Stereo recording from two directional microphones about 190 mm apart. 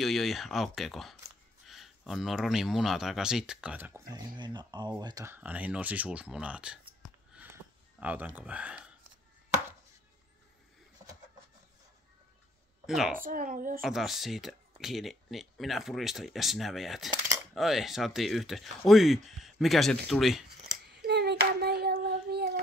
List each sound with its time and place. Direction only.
0.0 s speech: centre (ahead or behind)
4.4 s speech: 20° right (ahead or behind); by 8.9 s 5° right (ahead or behind)
12.8 s a woman's voice: centre (ahead or behind)
13.1 s a child's voice: 45° right (ahead or behind)
13.8 s speech: centre (ahead or behind)
20.8 s child singing: 60° right (ahead or behind)